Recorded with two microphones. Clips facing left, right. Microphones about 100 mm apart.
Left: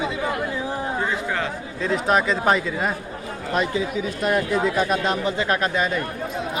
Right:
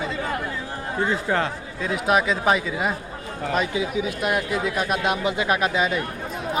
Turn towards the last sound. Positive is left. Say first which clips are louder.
# even
turn(degrees=-5)  # may be behind; listen again after turning